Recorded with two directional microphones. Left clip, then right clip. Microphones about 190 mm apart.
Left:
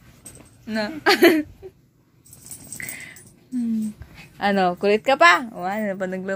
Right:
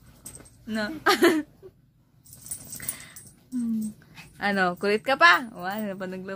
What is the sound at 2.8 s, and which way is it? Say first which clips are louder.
Dog: left 11 dB; centre (ahead or behind).